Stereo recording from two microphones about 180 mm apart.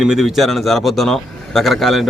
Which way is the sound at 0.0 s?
Centre (ahead or behind).